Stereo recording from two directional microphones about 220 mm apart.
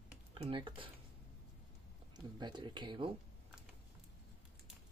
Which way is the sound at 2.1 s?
20° right (ahead or behind).